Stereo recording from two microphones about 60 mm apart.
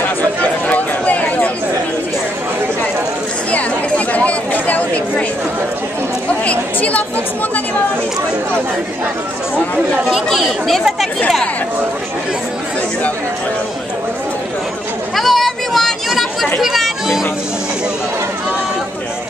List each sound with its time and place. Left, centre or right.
0.2 s chatter: left
3.5 s chatter: left
6.4 s chatter: left
10.0 s speech: centre
15.1 s chatter: centre
16.6 s a sound: centre